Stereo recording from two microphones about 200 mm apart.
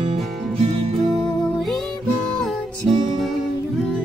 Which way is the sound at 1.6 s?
Centre (ahead or behind).